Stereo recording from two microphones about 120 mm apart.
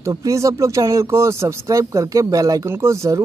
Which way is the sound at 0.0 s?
30° right (ahead or behind).